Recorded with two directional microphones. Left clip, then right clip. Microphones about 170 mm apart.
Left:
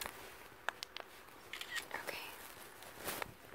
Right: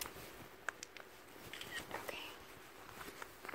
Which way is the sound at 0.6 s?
40° left (ahead or behind).